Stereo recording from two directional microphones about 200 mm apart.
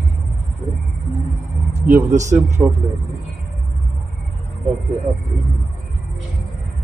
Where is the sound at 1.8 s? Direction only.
5° right (ahead or behind).